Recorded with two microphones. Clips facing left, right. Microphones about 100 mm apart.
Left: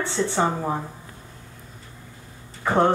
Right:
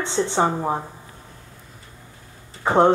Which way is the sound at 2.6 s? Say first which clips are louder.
Right 3 dB; 20° right (ahead or behind).